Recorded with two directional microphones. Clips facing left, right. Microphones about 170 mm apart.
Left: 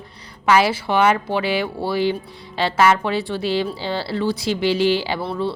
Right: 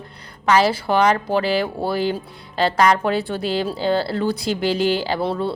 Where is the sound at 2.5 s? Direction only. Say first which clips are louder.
Even; 5° left (ahead or behind).